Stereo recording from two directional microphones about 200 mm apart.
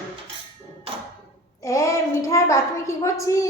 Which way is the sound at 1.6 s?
15° left (ahead or behind).